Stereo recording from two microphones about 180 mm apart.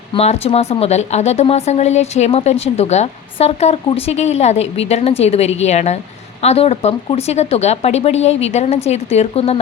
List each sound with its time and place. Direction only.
0.1 s speech: 35° left (ahead or behind)